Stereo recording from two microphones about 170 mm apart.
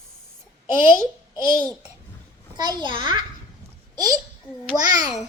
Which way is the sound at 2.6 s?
25° right (ahead or behind).